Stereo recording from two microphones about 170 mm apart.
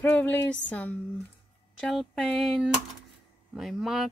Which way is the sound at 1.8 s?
5° left (ahead or behind).